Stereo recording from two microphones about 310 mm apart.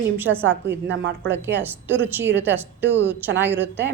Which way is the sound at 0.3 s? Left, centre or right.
Right.